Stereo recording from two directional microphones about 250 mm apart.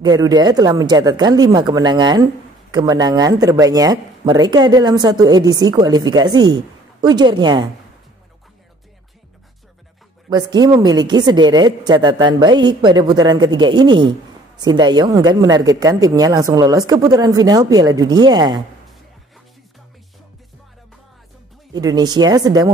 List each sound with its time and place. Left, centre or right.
0.0 s speech: centre
10.3 s speech: centre
21.7 s speech: centre